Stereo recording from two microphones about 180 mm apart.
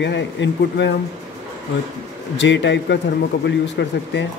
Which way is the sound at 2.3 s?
85° left.